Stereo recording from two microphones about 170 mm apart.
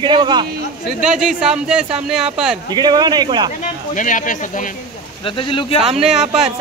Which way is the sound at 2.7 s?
25° right (ahead or behind).